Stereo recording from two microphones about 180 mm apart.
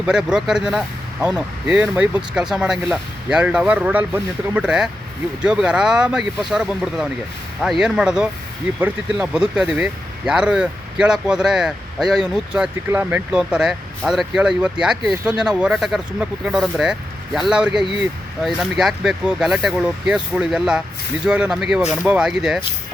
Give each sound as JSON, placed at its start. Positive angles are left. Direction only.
{"t": 0.0, "sound": "speech", "side_deg": -5}